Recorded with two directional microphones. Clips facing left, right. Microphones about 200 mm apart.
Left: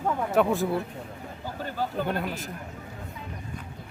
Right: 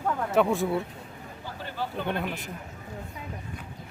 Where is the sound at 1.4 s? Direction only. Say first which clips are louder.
Left 3 dB; 45° left (ahead or behind).